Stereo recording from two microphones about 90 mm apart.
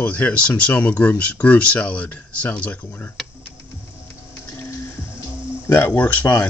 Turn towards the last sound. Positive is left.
turn(degrees=20)  # may be behind; listen again after turning